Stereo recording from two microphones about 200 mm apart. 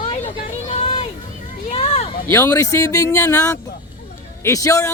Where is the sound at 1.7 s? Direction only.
30° left (ahead or behind).